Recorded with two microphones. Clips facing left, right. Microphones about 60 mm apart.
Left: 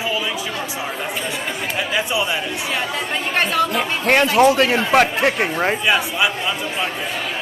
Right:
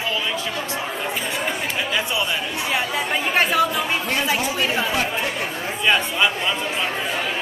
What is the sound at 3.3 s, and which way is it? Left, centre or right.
Speech, centre.